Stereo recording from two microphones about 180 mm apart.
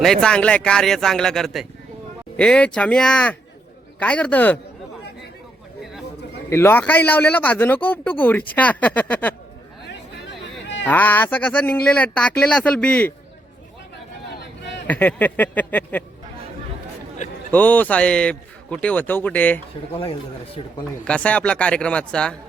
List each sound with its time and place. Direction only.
0.0 s a man's voice: 5° left (ahead or behind)
5.8 s a sound: centre (ahead or behind)
6.5 s speech: 15° left (ahead or behind)
10.8 s speech: 10° left (ahead or behind)
14.8 s speech: 10° left (ahead or behind)
17.5 s speech: 10° left (ahead or behind)
20.0 s a man's voice: 30° left (ahead or behind)
21.0 s speech: 5° left (ahead or behind)